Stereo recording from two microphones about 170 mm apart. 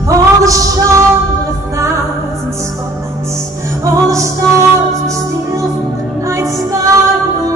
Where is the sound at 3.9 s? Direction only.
20° right (ahead or behind).